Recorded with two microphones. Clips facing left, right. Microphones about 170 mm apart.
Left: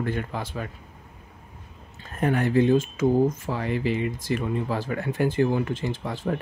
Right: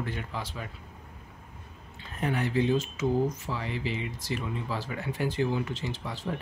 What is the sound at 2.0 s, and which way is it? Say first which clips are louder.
Speech: left 6 dB; 50° left (ahead or behind).